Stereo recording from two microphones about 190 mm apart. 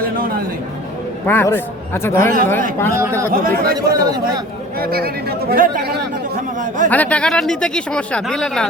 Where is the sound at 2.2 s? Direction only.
45° right (ahead or behind).